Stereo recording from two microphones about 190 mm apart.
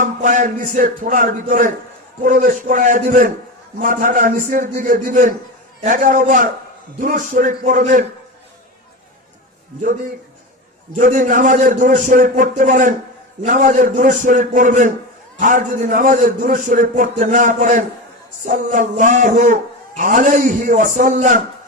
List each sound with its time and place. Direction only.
0.0 s a man's voice: 40° right (ahead or behind)
10.9 s a man's voice: 45° right (ahead or behind)